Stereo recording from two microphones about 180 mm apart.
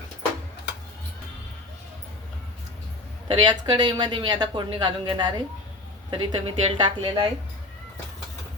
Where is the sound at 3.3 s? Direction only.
25° right (ahead or behind).